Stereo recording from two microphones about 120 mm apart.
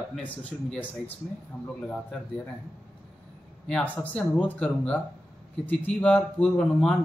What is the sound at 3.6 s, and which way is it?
Speech, 10° left (ahead or behind).